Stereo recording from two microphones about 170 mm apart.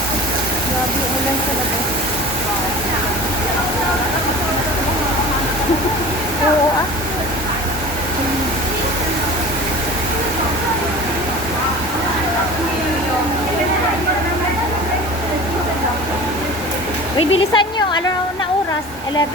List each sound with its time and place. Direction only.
17.2 s speech: 30° left (ahead or behind)